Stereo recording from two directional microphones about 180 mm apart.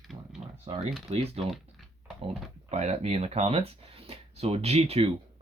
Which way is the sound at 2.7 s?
35° right (ahead or behind).